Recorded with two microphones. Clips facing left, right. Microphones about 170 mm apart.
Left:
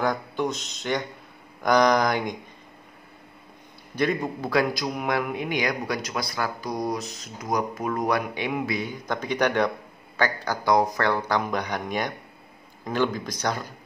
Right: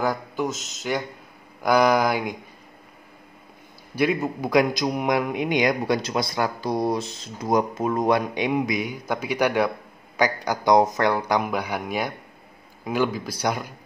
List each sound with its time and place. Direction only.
0.0 s a man's voice: 5° right (ahead or behind)
3.9 s a man's voice: 10° right (ahead or behind)